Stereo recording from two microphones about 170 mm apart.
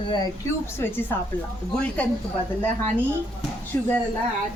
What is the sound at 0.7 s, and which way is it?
Speech, 15° left (ahead or behind).